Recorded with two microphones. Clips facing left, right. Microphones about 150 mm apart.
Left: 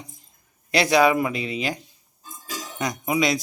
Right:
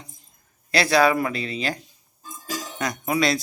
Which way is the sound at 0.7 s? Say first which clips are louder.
Left 1 dB; 20° left (ahead or behind).